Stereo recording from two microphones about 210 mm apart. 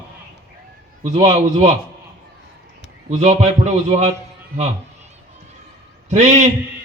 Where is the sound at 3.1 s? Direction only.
30° right (ahead or behind).